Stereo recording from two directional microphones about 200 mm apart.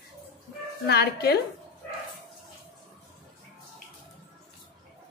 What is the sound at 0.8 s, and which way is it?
Speech, 55° left (ahead or behind).